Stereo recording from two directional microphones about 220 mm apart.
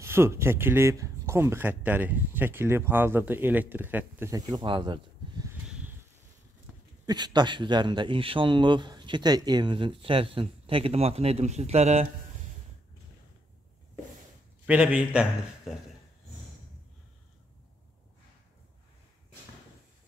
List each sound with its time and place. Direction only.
0.0 s speech: 10° right (ahead or behind)
5.7 s a sound: 5° right (ahead or behind)
7.1 s speech: 20° right (ahead or behind)
14.7 s a man's voice: 5° right (ahead or behind)